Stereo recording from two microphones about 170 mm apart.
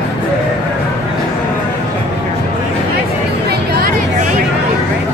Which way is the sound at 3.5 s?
60° right (ahead or behind).